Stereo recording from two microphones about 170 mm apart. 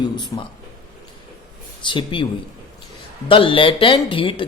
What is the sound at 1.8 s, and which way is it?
Speech, 30° left (ahead or behind).